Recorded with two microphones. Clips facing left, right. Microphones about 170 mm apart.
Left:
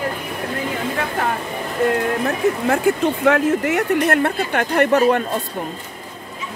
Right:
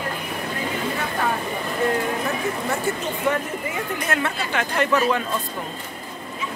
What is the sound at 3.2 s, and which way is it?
A woman's voice, 85° left.